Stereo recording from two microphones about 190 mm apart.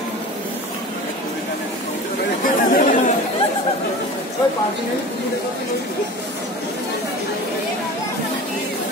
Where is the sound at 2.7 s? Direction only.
40° left (ahead or behind).